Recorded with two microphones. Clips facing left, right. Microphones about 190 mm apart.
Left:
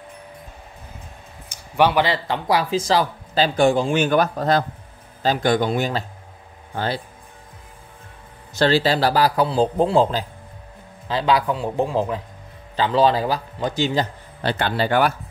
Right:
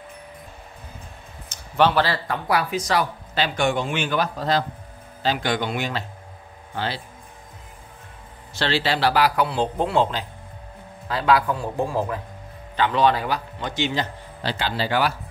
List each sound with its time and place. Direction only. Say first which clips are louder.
1.5 s a man's voice: left 1 dB; 10° left (ahead or behind); by 7.0 s 45° left (ahead or behind)
8.5 s a man's voice: left 6 dB; 40° left (ahead or behind)
11.1 s a man's voice: left 1 dB; 25° left (ahead or behind)
12.7 s a man's voice: left 2 dB; 30° left (ahead or behind)
14.4 s a man's voice: left 4 dB; 55° left (ahead or behind)